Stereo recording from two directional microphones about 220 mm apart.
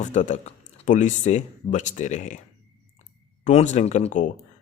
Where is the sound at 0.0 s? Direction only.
35° left (ahead or behind).